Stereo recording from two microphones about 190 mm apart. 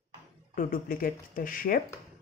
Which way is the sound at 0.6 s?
50° left (ahead or behind).